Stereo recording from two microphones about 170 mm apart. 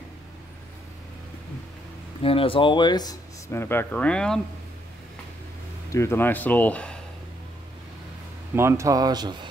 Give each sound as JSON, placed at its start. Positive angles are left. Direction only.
{"t": 2.2, "sound": "speech", "side_deg": 35}
{"t": 5.9, "sound": "speech", "side_deg": 15}
{"t": 8.5, "sound": "speech", "side_deg": -15}